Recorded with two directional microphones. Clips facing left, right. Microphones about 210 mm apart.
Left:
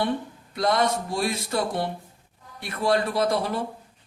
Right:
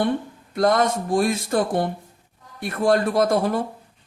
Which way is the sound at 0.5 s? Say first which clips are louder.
Right 4 dB; 50° right (ahead or behind).